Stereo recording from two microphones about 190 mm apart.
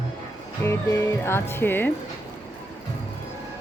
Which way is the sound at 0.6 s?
15° left (ahead or behind).